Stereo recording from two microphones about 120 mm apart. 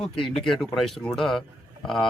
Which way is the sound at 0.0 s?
5° left (ahead or behind).